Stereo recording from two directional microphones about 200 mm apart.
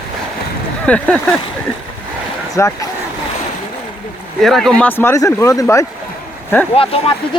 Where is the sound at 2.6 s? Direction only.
15° left (ahead or behind).